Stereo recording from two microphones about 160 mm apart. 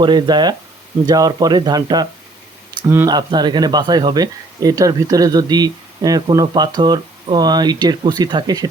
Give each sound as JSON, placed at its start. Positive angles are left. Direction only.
{"t": 0.0, "sound": "speech", "side_deg": -25}